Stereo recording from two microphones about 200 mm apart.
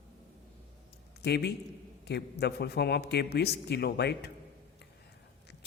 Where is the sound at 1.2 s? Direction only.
55° left (ahead or behind).